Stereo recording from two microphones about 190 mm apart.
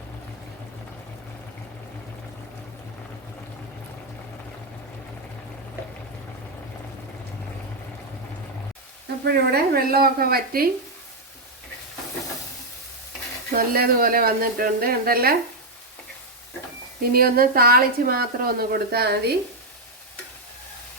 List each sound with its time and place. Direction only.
9.2 s speech: 55° right (ahead or behind)
13.5 s speech: 50° right (ahead or behind)
17.0 s speech: 50° right (ahead or behind)